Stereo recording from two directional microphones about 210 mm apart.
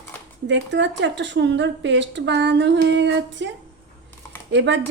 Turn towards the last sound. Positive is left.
turn(degrees=-55)  # may be behind; listen again after turning